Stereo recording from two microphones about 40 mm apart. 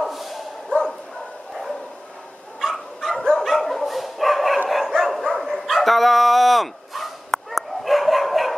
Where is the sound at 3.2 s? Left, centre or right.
Centre.